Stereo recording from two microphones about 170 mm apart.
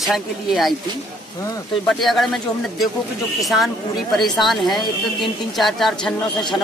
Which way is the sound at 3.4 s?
Centre (ahead or behind).